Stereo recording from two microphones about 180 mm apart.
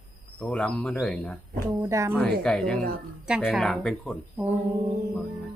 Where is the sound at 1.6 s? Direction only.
15° right (ahead or behind).